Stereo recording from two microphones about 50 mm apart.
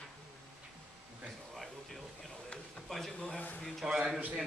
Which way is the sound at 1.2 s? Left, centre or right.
Centre.